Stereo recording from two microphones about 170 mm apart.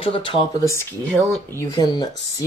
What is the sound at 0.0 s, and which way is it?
Speech, 30° left (ahead or behind).